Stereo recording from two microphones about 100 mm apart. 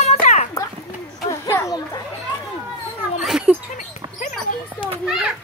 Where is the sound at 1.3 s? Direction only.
30° left (ahead or behind).